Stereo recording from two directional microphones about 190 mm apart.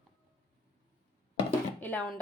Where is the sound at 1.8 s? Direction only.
5° left (ahead or behind).